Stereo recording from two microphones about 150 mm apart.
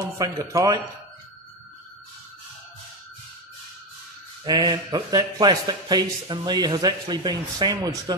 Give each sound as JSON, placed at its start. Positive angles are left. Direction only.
{"t": 0.2, "sound": "speech", "side_deg": -25}
{"t": 4.5, "sound": "speech", "side_deg": -30}